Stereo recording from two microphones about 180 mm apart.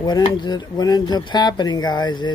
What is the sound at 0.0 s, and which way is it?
Speech, 25° left (ahead or behind).